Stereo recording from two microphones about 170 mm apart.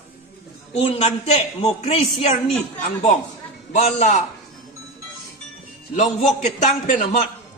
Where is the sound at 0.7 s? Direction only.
40° left (ahead or behind).